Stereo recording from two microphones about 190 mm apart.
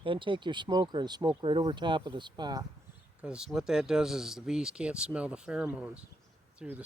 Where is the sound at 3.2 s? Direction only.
5° right (ahead or behind).